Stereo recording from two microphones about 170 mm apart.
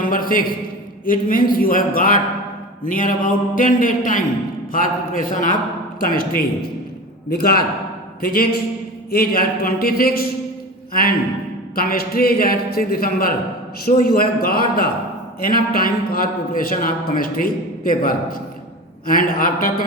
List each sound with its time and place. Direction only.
0.0 s a sound: 55° left (ahead or behind)
1.0 s a man's voice: 55° left (ahead or behind)
11.7 s a man's voice: 60° left (ahead or behind)